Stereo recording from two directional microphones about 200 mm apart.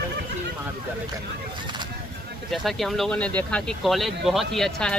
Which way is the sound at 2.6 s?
Centre (ahead or behind).